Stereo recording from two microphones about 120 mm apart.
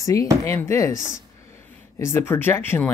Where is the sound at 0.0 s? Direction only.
30° left (ahead or behind).